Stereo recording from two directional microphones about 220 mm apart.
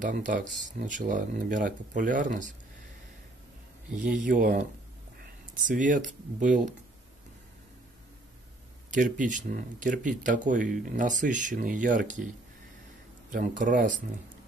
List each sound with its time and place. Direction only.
0.0 s speech: 40° right (ahead or behind)
3.9 s speech: 5° right (ahead or behind)
4.2 s speech: 40° right (ahead or behind)
8.9 s speech: 35° right (ahead or behind)
13.7 s speech: 35° right (ahead or behind)